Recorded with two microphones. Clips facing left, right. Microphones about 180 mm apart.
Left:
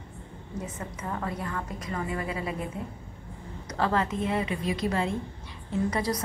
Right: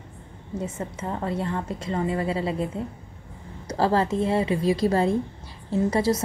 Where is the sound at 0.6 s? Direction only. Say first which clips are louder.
Right 6 dB; 25° right (ahead or behind).